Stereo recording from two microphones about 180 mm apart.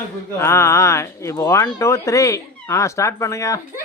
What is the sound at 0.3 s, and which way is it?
Speech, 15° left (ahead or behind).